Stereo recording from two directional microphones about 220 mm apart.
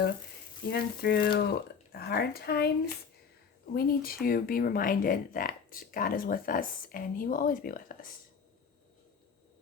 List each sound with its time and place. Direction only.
0.7 s speech: 50° left (ahead or behind)